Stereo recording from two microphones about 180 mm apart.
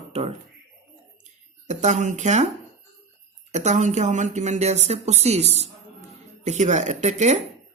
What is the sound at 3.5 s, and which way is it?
Speech, 40° right (ahead or behind).